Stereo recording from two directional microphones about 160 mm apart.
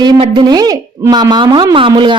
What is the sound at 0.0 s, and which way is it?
A woman's voice, 30° right (ahead or behind).